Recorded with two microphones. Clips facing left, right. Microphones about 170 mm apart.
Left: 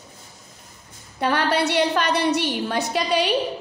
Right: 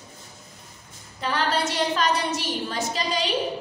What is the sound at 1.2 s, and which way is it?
A woman's voice, 65° left (ahead or behind).